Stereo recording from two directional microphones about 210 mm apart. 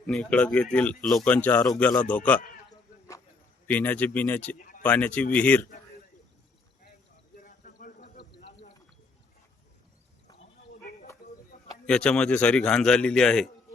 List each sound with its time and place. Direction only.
0.1 s speech: 5° left (ahead or behind)
3.7 s speech: 5° left (ahead or behind)
4.5 s a sound: 40° left (ahead or behind)
4.8 s speech: 5° left (ahead or behind)
7.3 s a sound: 40° left (ahead or behind)
11.5 s bird: 40° left (ahead or behind)
11.9 s speech: 5° left (ahead or behind)